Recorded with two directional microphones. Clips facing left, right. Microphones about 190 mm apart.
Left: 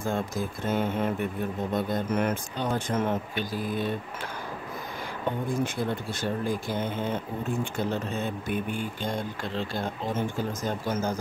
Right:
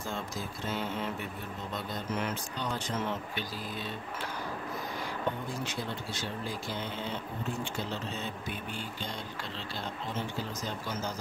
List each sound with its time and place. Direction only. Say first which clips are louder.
0.0 s speech: left 8 dB; 50° left (ahead or behind)
5.5 s speech: left 8 dB; 50° left (ahead or behind)